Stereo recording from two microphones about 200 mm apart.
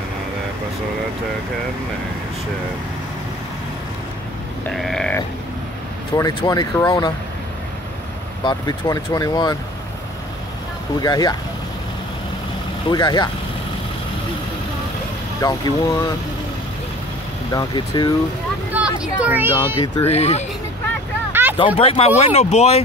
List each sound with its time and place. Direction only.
4.6 s grunt: centre (ahead or behind)
6.1 s speech: 20° left (ahead or behind)
8.5 s speech: 20° left (ahead or behind)
11.0 s speech: 20° left (ahead or behind)
12.9 s speech: 20° left (ahead or behind)
15.4 s speech: 15° left (ahead or behind)
17.6 s speech: 20° left (ahead or behind)
18.7 s speech: 5° right (ahead or behind)
19.5 s speech: 25° left (ahead or behind)
21.3 s a sound: 10° right (ahead or behind)
21.7 s speech: 30° left (ahead or behind)